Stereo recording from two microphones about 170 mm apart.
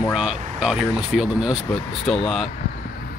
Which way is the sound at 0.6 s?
5° right (ahead or behind).